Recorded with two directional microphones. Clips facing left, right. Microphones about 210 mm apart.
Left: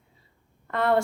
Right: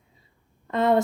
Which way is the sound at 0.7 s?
20° right (ahead or behind).